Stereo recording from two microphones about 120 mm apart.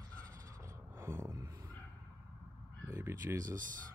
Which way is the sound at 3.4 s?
90° right.